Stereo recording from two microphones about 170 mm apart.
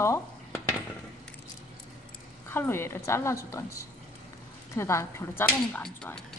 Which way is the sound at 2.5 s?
15° left (ahead or behind).